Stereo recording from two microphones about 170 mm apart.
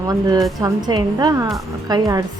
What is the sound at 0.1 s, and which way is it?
A woman's voice, 20° right (ahead or behind).